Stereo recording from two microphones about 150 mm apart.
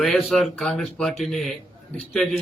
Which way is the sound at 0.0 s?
Centre (ahead or behind).